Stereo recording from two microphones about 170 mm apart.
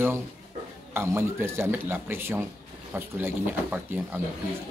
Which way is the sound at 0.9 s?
15° right (ahead or behind).